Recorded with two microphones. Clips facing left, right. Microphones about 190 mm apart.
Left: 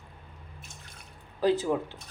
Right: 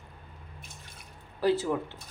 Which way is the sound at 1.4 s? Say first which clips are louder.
Left 1 dB; 15° left (ahead or behind).